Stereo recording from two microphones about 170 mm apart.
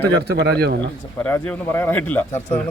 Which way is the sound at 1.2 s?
10° left (ahead or behind).